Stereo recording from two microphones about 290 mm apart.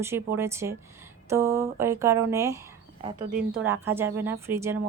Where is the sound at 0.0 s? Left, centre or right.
Centre.